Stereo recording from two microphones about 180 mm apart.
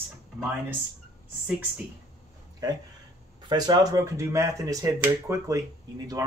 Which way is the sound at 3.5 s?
20° right (ahead or behind).